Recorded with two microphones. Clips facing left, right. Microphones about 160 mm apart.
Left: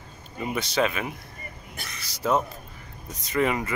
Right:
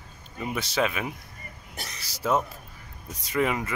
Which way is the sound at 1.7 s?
35° right (ahead or behind).